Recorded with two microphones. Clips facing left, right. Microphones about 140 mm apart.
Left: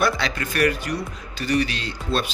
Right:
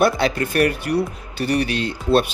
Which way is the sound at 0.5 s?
55° right (ahead or behind).